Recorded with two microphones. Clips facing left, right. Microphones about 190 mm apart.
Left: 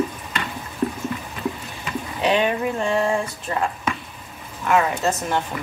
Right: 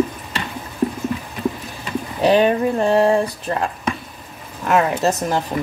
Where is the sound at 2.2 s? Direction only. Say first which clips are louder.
Right 6 dB; 40° right (ahead or behind).